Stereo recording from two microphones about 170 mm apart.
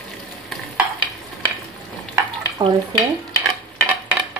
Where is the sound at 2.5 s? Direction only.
20° right (ahead or behind).